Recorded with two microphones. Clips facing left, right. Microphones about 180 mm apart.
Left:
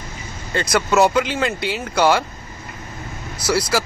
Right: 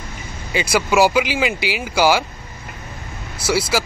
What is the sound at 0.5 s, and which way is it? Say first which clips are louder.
Speech: even; 5° right (ahead or behind).